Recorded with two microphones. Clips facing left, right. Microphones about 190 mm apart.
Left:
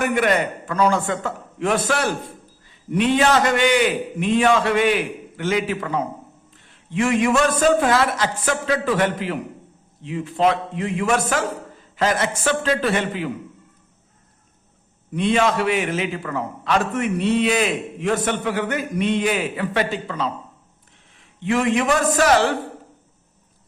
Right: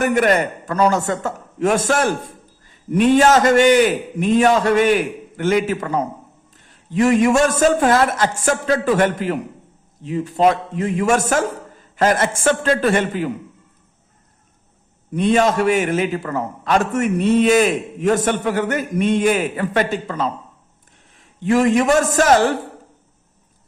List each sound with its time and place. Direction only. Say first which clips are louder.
0.0 s a man's voice: right 3 dB; 45° right (ahead or behind)
15.1 s a man's voice: right 3 dB; 45° right (ahead or behind)
21.4 s a man's voice: right 4 dB; 40° right (ahead or behind)